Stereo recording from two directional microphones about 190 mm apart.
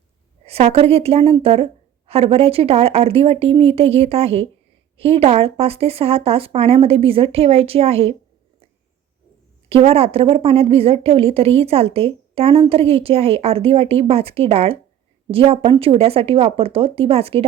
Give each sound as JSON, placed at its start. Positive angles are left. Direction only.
{"t": 0.4, "sound": "a woman's voice", "side_deg": -30}
{"t": 9.6, "sound": "a woman's voice", "side_deg": -30}